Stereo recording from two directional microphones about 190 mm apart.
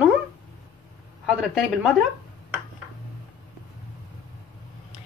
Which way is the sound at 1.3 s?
5° right (ahead or behind).